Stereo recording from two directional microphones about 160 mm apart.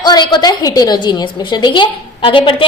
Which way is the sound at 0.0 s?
25° left (ahead or behind).